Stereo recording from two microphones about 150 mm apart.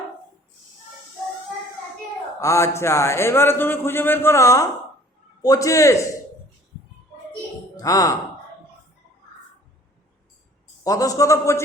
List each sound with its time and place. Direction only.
2.4 s a man's voice: 20° left (ahead or behind)
7.8 s speech: 25° left (ahead or behind)
10.8 s a man's voice: 20° left (ahead or behind)